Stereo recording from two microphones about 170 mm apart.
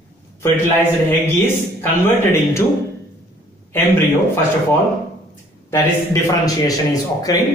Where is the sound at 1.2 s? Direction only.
15° left (ahead or behind).